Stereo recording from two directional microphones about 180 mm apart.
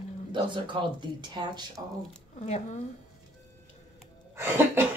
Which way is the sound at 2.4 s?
40° left (ahead or behind).